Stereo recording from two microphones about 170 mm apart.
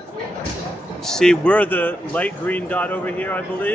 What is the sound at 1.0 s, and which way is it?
Speech, 5° left (ahead or behind).